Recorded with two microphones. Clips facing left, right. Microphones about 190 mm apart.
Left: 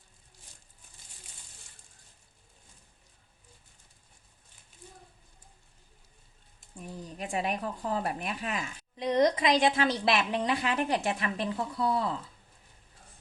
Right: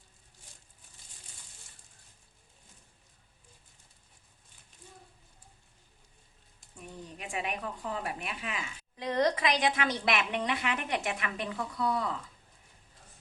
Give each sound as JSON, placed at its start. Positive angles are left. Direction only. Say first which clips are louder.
{"t": 6.8, "sound": "a woman's voice", "louder": "left 4 dB", "side_deg": 35}
{"t": 9.0, "sound": "a woman's voice", "louder": "left 3 dB", "side_deg": 20}